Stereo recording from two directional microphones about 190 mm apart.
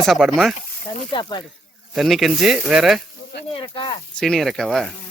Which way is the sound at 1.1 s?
25° left (ahead or behind).